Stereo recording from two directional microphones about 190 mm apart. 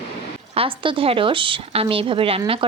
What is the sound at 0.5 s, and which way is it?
A woman's voice, 30° right (ahead or behind).